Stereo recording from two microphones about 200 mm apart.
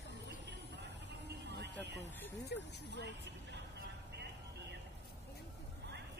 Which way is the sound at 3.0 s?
55° right (ahead or behind).